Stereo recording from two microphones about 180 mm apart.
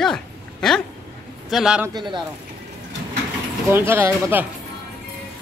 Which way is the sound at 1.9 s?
25° right (ahead or behind).